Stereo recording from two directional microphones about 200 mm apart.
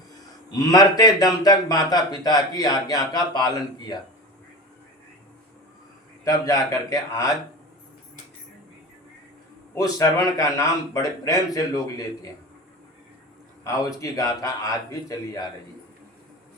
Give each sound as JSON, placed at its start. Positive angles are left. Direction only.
{"t": 0.5, "sound": "a man's voice", "side_deg": 20}
{"t": 6.2, "sound": "speech", "side_deg": 15}
{"t": 9.7, "sound": "speech", "side_deg": 15}
{"t": 13.7, "sound": "speech", "side_deg": 15}